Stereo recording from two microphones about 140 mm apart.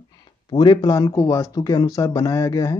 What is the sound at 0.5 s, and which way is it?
Speech, 30° left (ahead or behind).